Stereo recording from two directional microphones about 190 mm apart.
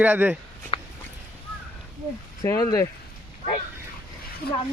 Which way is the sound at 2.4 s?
15° left (ahead or behind).